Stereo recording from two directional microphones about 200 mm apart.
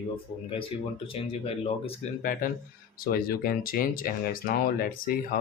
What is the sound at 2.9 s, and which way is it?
Speech, 45° left (ahead or behind).